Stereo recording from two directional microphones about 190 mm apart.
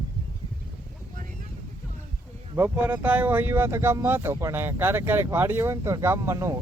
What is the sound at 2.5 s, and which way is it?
Speech, 10° right (ahead or behind).